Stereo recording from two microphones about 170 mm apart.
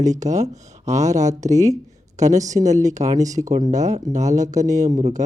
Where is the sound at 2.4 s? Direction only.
20° right (ahead or behind).